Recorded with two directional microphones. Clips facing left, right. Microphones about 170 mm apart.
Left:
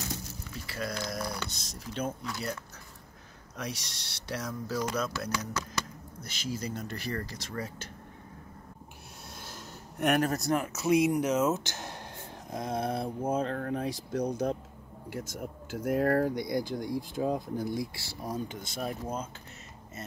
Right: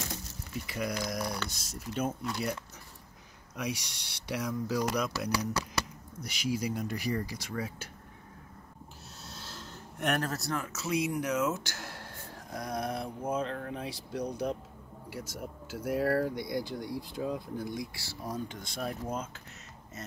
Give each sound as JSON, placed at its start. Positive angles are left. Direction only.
{"t": 0.7, "sound": "speech", "side_deg": -15}
{"t": 3.5, "sound": "speech", "side_deg": -10}
{"t": 9.3, "sound": "speech", "side_deg": 10}
{"t": 13.6, "sound": "speech", "side_deg": 45}
{"t": 17.9, "sound": "speech", "side_deg": 15}